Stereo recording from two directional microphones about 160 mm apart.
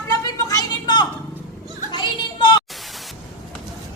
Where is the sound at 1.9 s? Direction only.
30° left (ahead or behind).